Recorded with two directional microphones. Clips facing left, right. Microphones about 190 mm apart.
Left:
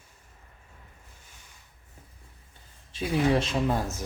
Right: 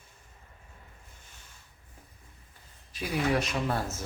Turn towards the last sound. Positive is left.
turn(degrees=15)  # may be behind; listen again after turning